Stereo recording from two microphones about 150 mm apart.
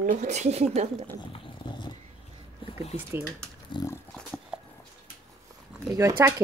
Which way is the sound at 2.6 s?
45° left (ahead or behind).